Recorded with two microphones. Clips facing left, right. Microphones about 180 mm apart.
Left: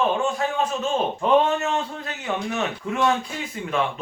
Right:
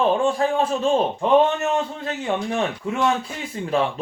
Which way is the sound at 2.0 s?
30° right (ahead or behind).